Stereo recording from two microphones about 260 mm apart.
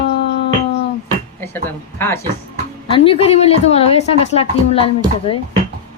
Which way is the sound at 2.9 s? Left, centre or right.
Left.